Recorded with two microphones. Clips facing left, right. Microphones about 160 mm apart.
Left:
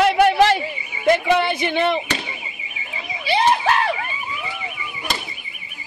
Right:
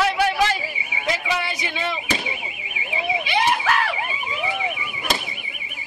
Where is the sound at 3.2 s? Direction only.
30° left (ahead or behind).